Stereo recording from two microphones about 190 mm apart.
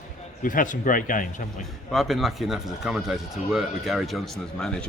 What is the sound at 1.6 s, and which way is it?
Speech, centre (ahead or behind).